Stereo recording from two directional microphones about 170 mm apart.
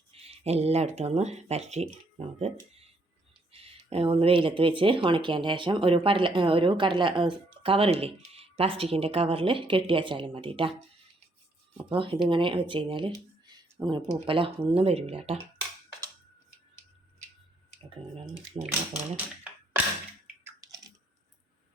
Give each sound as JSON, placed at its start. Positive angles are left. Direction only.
{"t": 0.1, "sound": "speech", "side_deg": -35}
{"t": 11.9, "sound": "speech", "side_deg": -30}
{"t": 18.5, "sound": "speech", "side_deg": -30}
{"t": 20.2, "sound": "bathtub", "side_deg": -15}